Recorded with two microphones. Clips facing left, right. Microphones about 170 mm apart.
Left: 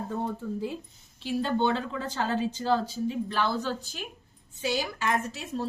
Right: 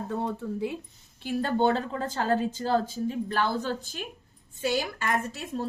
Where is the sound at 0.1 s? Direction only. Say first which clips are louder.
Right 3 dB; 65° right (ahead or behind).